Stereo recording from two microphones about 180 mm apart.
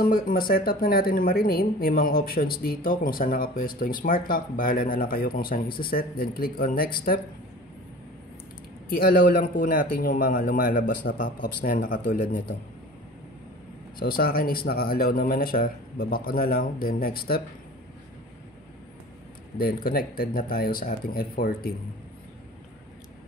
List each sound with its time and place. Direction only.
0.0 s a woman's voice: 55° left (ahead or behind)
8.9 s a man's voice: 55° left (ahead or behind)
13.9 s a woman's voice: 55° left (ahead or behind)
19.6 s a woman's voice: 55° left (ahead or behind)